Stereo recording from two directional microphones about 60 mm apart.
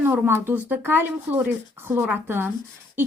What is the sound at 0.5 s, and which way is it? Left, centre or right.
A woman's voice, right.